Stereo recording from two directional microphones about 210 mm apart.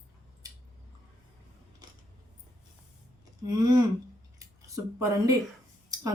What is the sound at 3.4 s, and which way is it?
Speech, 15° right (ahead or behind).